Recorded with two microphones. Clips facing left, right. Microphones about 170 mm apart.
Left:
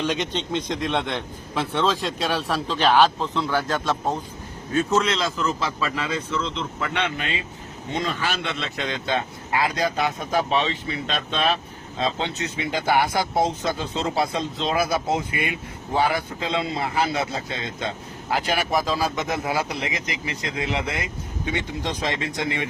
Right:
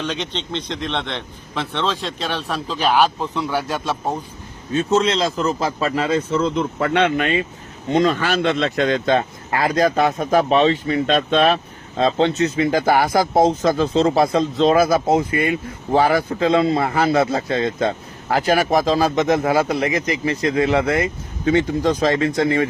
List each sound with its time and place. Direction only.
0.0 s a man's voice: 10° left (ahead or behind); by 4.2 s 15° right (ahead or behind)
4.7 s a man's voice: 25° right (ahead or behind); by 22.7 s 45° right (ahead or behind)